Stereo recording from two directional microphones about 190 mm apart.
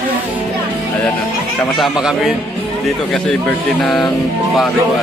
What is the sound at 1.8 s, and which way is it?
Speech, centre (ahead or behind).